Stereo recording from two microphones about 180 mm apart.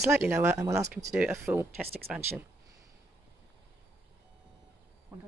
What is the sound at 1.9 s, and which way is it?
Speech, 60° right (ahead or behind).